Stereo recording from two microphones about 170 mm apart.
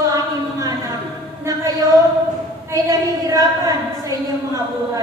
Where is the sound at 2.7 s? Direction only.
20° right (ahead or behind).